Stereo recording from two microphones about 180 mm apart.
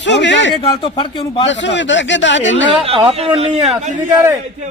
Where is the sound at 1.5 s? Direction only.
90° left.